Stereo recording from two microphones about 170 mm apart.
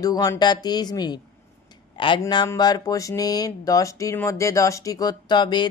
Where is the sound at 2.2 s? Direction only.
20° left (ahead or behind).